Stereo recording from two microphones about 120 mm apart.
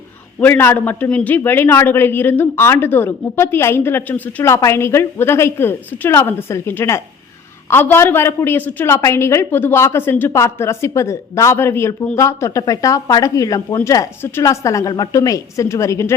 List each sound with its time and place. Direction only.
0.3 s speech: 20° left (ahead or behind)